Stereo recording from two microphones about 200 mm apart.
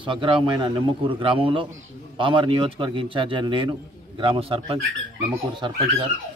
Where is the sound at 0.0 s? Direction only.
25° right (ahead or behind).